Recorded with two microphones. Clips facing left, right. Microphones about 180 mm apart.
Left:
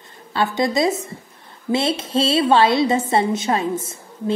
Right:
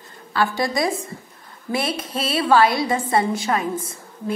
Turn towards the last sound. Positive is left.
turn(degrees=25)  # may be behind; listen again after turning